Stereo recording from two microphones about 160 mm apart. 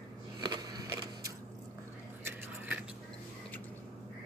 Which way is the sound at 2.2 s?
10° right (ahead or behind).